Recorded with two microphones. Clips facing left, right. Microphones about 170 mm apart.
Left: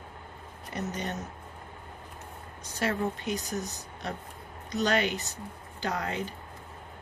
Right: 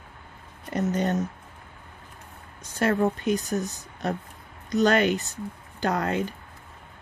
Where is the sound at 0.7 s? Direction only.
50° right (ahead or behind).